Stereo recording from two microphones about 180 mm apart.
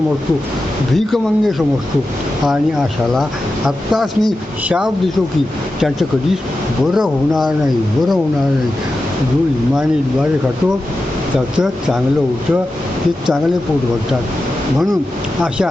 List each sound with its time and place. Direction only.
0.9 s speech: centre (ahead or behind)
3.7 s speech: centre (ahead or behind)
11.5 s speech: 5° right (ahead or behind)